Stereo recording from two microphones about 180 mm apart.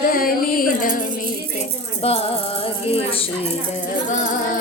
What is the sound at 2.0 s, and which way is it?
Music, 35° left (ahead or behind).